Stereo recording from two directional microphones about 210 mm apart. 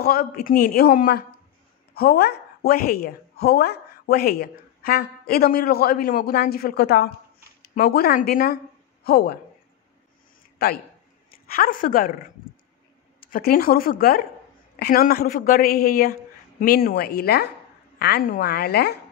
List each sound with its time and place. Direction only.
0.0 s a woman's voice: 45° left (ahead or behind)
10.6 s a man's voice: 50° left (ahead or behind)
13.2 s a woman's voice: 45° left (ahead or behind)